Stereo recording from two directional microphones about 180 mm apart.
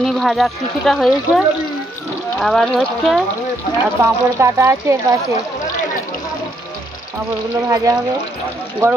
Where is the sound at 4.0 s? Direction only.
15° right (ahead or behind).